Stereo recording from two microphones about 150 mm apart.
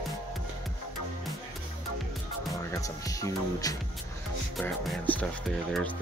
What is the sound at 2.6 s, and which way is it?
Music, 20° left (ahead or behind).